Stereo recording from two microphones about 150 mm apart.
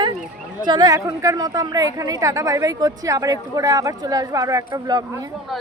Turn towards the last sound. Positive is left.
turn(degrees=0)  # may be behind; listen again after turning